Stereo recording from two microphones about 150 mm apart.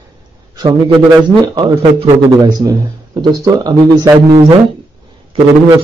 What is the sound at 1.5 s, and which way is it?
A man's voice, 30° right (ahead or behind).